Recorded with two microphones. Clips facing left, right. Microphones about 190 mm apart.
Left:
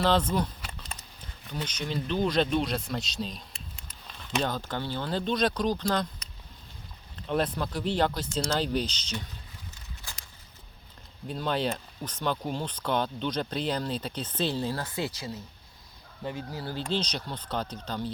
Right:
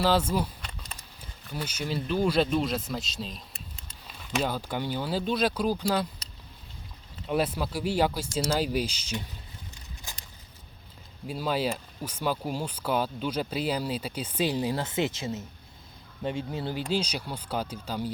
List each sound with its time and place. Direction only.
0.0 s speech: 5° right (ahead or behind)
1.6 s speech: 5° right (ahead or behind)
7.3 s speech: 5° right (ahead or behind)
11.3 s speech: 5° right (ahead or behind); by 16.7 s 25° right (ahead or behind)
16.7 s speech: 10° right (ahead or behind)